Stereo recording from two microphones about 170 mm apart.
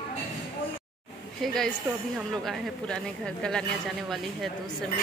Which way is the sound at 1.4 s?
Centre (ahead or behind).